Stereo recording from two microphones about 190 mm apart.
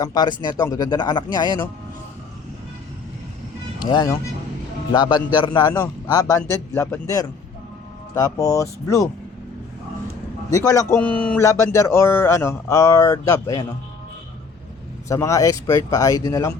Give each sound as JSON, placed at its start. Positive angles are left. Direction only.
{"t": 0.0, "sound": "speech", "side_deg": 20}
{"t": 3.8, "sound": "speech", "side_deg": 20}
{"t": 10.5, "sound": "speech", "side_deg": 15}
{"t": 15.1, "sound": "speech", "side_deg": 15}